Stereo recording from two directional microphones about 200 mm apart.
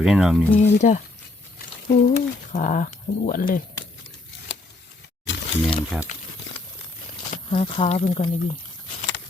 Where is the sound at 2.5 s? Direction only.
40° left (ahead or behind).